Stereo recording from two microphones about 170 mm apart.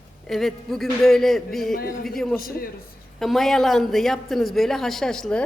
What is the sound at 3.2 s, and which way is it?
Speech, centre (ahead or behind).